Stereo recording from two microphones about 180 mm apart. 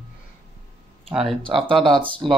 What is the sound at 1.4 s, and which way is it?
Speech, 30° right (ahead or behind).